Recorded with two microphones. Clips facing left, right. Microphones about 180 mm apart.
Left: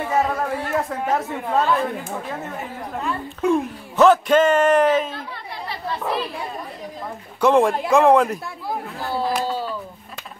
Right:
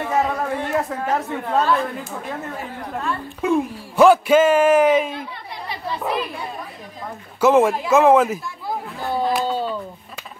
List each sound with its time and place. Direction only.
0.0 s speech: centre (ahead or behind); by 6.2 s 15° right (ahead or behind)
7.3 s speech: 5° right (ahead or behind)